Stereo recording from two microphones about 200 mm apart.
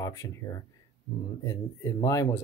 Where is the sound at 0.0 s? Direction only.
15° left (ahead or behind).